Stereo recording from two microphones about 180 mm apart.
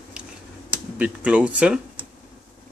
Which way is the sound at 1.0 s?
5° right (ahead or behind).